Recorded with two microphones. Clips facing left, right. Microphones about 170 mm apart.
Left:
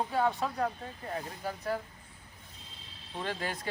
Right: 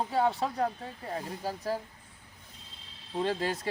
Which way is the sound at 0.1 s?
25° right (ahead or behind).